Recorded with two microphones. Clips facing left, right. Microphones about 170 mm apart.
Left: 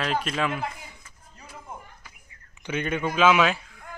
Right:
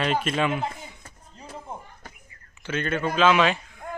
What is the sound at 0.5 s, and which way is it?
Speech, 25° right (ahead or behind).